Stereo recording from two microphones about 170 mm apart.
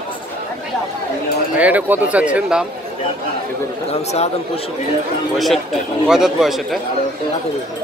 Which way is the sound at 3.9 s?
40° left (ahead or behind).